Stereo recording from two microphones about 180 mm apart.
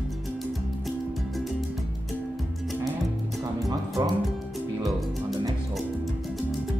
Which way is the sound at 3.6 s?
20° right (ahead or behind).